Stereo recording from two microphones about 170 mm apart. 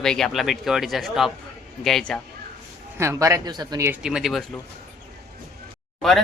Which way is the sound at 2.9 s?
15° right (ahead or behind).